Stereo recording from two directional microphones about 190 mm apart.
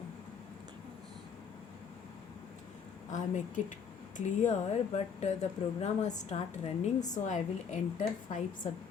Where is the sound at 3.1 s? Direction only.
40° left (ahead or behind).